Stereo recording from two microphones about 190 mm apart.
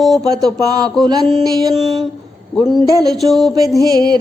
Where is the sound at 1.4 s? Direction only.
20° right (ahead or behind).